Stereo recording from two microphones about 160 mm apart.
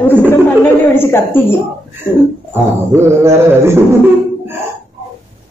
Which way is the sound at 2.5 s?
15° right (ahead or behind).